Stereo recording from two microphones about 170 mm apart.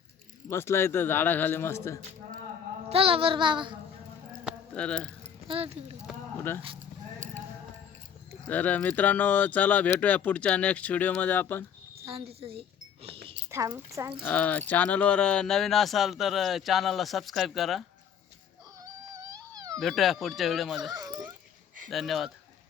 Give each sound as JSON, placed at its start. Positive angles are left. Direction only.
{"t": 0.4, "sound": "speech", "side_deg": 15}
{"t": 2.9, "sound": "child singing", "side_deg": -35}
{"t": 4.7, "sound": "speech", "side_deg": 5}
{"t": 5.2, "sound": "speech", "side_deg": -35}
{"t": 8.4, "sound": "speech", "side_deg": 10}
{"t": 12.0, "sound": "speech", "side_deg": -35}
{"t": 13.3, "sound": "a woman's voice", "side_deg": -15}
{"t": 14.2, "sound": "speech", "side_deg": 10}
{"t": 18.8, "sound": "whimper", "side_deg": -20}
{"t": 19.8, "sound": "speech", "side_deg": 0}
{"t": 20.9, "sound": "a sound", "side_deg": -25}
{"t": 21.8, "sound": "speech", "side_deg": 0}